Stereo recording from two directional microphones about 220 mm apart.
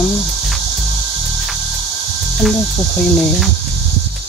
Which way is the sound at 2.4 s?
Centre (ahead or behind).